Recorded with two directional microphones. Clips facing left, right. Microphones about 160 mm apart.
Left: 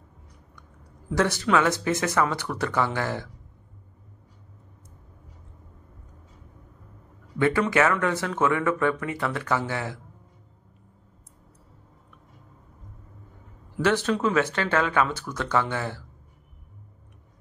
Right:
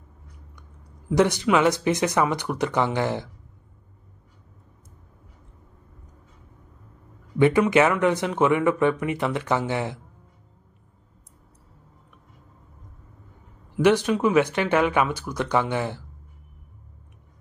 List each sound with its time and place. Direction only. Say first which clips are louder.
1.1 s speech: right 3 dB; 15° right (ahead or behind)
7.3 s speech: right 4 dB; 20° right (ahead or behind)
13.7 s speech: right 4 dB; 15° right (ahead or behind)